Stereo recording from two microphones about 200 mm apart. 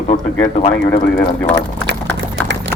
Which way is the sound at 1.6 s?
60° right (ahead or behind).